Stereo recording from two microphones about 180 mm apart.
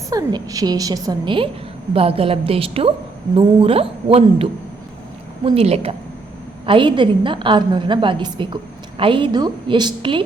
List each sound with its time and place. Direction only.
0.1 s a woman's voice: 20° right (ahead or behind)
5.5 s a woman's voice: 35° right (ahead or behind)